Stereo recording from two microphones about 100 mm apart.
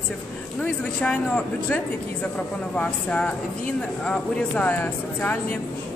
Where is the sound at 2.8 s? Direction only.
10° left (ahead or behind).